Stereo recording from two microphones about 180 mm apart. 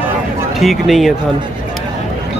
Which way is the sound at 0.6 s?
Centre (ahead or behind).